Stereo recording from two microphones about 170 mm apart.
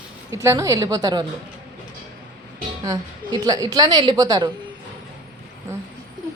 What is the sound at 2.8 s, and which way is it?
A woman's voice, 25° right (ahead or behind).